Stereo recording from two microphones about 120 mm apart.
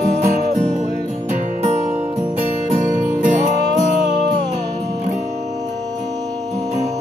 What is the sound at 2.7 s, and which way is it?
Music, 90° right.